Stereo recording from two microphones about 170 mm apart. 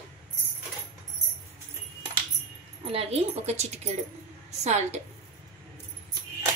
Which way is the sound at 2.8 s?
35° right (ahead or behind).